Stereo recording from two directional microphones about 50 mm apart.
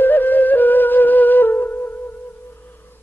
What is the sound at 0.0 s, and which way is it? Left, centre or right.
Flute, left.